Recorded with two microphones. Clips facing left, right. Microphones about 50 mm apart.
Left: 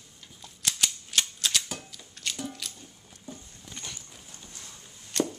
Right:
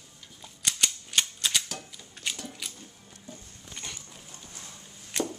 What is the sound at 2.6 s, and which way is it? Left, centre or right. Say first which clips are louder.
Music: even; centre.